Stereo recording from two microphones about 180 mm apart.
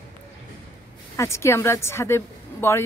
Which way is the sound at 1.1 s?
15° left (ahead or behind).